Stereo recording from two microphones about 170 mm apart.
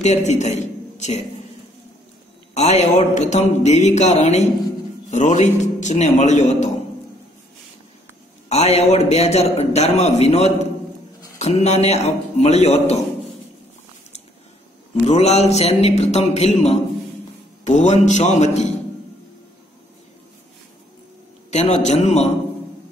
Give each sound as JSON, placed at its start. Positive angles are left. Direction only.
{"t": 0.0, "sound": "a man's voice", "side_deg": 40}
{"t": 2.5, "sound": "a man's voice", "side_deg": 40}
{"t": 8.5, "sound": "a man's voice", "side_deg": 40}
{"t": 15.0, "sound": "a man's voice", "side_deg": 40}
{"t": 21.5, "sound": "a man's voice", "side_deg": 40}